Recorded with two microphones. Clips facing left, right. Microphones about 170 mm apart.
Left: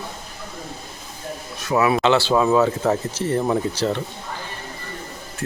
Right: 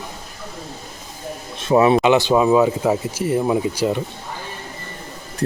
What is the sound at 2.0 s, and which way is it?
Speech, 15° right (ahead or behind).